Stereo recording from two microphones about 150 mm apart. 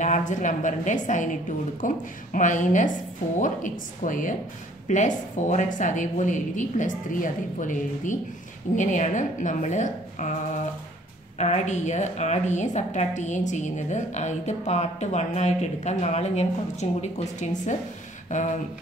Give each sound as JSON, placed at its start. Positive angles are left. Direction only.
{"t": 0.0, "sound": "a woman's voice", "side_deg": 55}